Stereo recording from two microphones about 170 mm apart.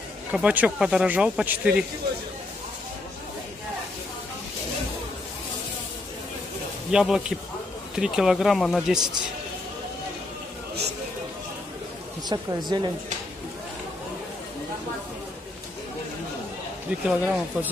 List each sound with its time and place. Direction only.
0.3 s speech: 10° right (ahead or behind)
6.9 s speech: 5° right (ahead or behind)
12.3 s a woman's voice: 25° right (ahead or behind)
17.1 s speech: 5° right (ahead or behind)